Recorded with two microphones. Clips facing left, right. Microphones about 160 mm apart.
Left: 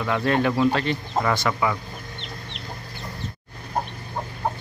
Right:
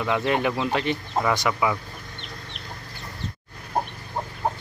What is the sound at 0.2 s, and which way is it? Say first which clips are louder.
Speech: left 3 dB; 15° right (ahead or behind).